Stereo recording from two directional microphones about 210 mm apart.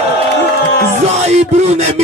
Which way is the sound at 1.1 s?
30° right (ahead or behind).